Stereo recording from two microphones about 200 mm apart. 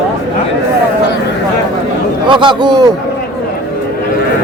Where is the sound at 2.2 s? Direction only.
25° right (ahead or behind).